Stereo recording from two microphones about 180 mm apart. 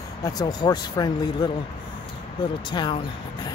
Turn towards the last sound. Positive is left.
turn(degrees=25)  # may be behind; listen again after turning